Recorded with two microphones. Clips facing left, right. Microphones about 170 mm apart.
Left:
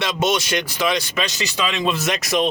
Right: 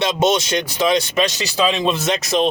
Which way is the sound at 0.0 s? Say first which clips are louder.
Right 4 dB; 25° right (ahead or behind).